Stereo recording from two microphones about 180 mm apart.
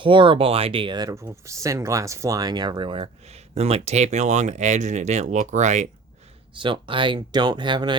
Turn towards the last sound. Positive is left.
turn(degrees=-25)  # may be behind; listen again after turning